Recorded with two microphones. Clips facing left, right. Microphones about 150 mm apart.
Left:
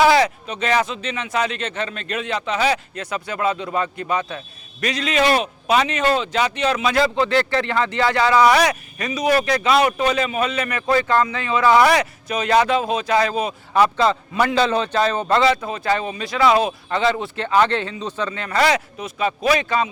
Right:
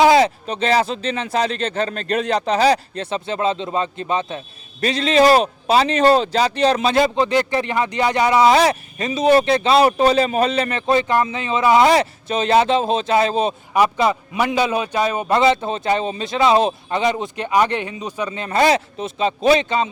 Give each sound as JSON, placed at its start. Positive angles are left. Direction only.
{"t": 0.0, "sound": "a sound", "side_deg": -20}
{"t": 0.4, "sound": "a man's voice", "side_deg": -35}
{"t": 6.9, "sound": "speech", "side_deg": -20}
{"t": 13.7, "sound": "speech", "side_deg": -15}